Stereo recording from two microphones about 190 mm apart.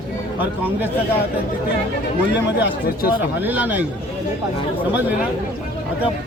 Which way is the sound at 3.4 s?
10° right (ahead or behind).